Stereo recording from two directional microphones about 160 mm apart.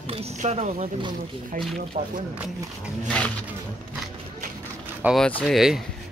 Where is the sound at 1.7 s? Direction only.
55° right (ahead or behind).